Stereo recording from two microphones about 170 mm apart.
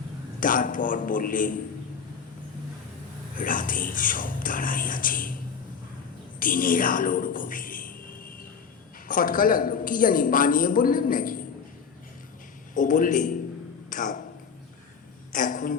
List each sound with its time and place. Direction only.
0.3 s speech: 55° left (ahead or behind)
3.3 s speech: 55° left (ahead or behind)
6.4 s a woman's voice: 55° left (ahead or behind)
9.0 s a woman's voice: 55° left (ahead or behind)
12.7 s speech: 50° left (ahead or behind)
15.3 s a sound: 50° left (ahead or behind)